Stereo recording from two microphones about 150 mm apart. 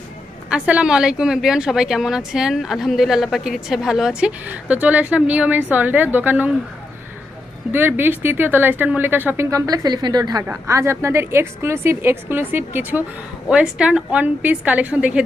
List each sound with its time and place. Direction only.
0.5 s a woman's voice: 10° right (ahead or behind)
7.7 s speech: 15° right (ahead or behind)